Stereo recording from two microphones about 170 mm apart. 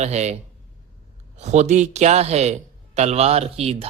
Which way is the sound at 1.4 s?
45° right (ahead or behind).